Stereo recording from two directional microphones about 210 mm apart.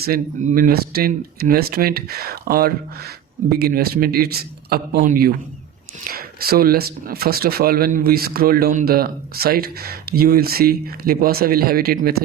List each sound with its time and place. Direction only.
0.0 s speech: 45° right (ahead or behind)